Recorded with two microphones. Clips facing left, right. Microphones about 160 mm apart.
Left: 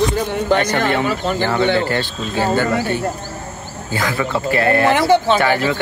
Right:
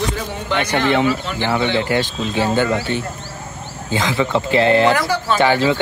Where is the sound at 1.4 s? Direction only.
15° right (ahead or behind).